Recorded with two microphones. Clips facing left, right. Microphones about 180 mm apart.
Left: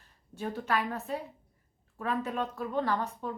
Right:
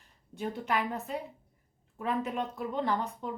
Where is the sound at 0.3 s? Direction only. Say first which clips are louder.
Even; 15° right (ahead or behind).